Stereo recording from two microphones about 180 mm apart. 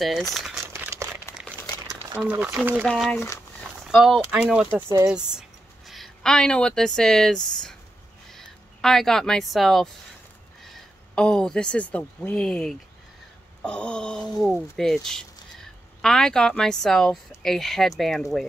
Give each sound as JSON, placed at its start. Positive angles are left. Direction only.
{"t": 0.0, "sound": "speech", "side_deg": 0}
{"t": 0.7, "sound": "crumpling", "side_deg": -15}
{"t": 1.3, "sound": "crumpling", "side_deg": 15}
{"t": 2.1, "sound": "speech", "side_deg": -10}
{"t": 2.9, "sound": "speech", "side_deg": 5}
{"t": 3.9, "sound": "speech", "side_deg": -5}
{"t": 5.4, "sound": "a sound", "side_deg": 0}
{"t": 8.3, "sound": "speech", "side_deg": 0}